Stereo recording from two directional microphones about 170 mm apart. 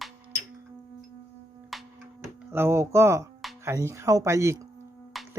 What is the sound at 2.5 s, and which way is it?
Speech, 15° right (ahead or behind).